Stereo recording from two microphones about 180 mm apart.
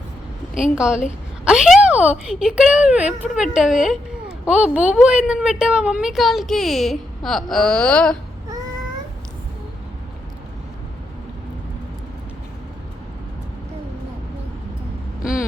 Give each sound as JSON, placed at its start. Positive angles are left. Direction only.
{"t": 0.5, "sound": "speech", "side_deg": -5}